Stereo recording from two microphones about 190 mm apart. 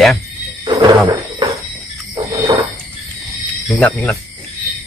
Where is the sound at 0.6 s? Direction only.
20° right (ahead or behind).